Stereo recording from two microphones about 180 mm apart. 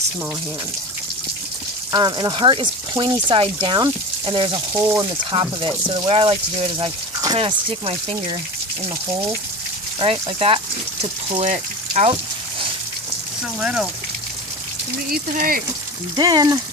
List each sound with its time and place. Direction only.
1.9 s speech: 25° right (ahead or behind)
7.3 s speech: 30° right (ahead or behind)
10.0 s speech: 30° right (ahead or behind)
11.3 s speech: 40° right (ahead or behind)
13.6 s speech: 5° right (ahead or behind)
15.1 s speech: 55° right (ahead or behind)
16.1 s speech: 20° right (ahead or behind)